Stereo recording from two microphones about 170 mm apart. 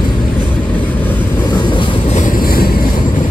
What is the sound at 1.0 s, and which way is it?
Vehicle, 10° left (ahead or behind).